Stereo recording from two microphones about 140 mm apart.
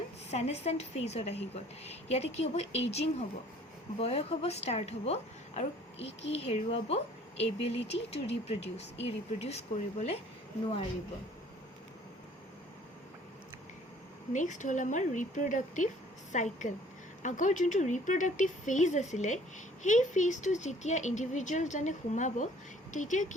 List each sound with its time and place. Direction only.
0.3 s a woman's voice: 50° left (ahead or behind)
14.3 s speech: 65° left (ahead or behind)